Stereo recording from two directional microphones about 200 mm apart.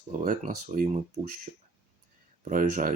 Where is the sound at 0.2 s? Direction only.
40° right (ahead or behind).